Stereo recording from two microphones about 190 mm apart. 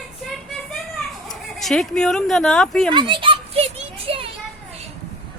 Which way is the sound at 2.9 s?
25° right (ahead or behind).